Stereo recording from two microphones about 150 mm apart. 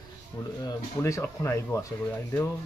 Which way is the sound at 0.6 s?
20° left (ahead or behind).